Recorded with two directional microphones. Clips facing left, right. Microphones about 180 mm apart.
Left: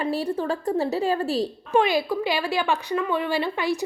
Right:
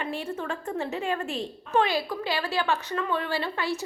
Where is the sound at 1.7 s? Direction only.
15° left (ahead or behind).